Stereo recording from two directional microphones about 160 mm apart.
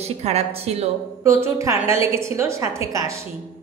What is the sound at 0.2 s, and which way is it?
Speech, 40° right (ahead or behind).